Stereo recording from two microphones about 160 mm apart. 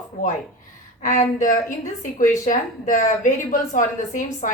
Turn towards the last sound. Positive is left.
turn(degrees=50)  # may be behind; listen again after turning